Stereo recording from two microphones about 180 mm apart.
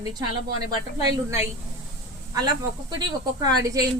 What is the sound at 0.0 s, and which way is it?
Speech, 25° right (ahead or behind).